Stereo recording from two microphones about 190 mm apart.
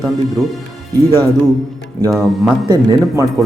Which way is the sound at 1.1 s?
20° right (ahead or behind).